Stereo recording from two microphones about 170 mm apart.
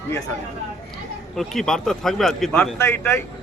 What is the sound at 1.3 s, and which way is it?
Speech, centre (ahead or behind).